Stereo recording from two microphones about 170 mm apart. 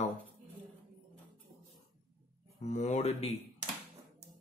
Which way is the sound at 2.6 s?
40° left (ahead or behind).